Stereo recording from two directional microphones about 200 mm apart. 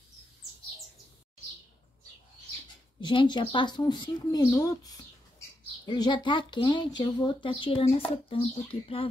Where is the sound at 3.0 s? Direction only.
25° left (ahead or behind).